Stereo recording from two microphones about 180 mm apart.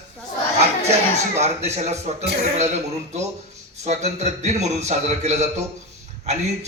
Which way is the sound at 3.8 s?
40° right (ahead or behind).